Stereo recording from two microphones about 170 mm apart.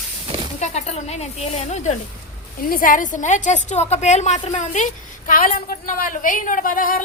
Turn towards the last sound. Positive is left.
turn(degrees=55)  # may be behind; listen again after turning